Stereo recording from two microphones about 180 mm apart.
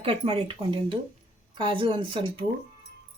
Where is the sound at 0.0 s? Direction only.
30° right (ahead or behind).